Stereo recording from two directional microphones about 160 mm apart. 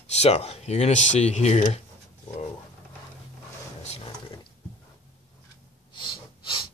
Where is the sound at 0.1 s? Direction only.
40° left (ahead or behind).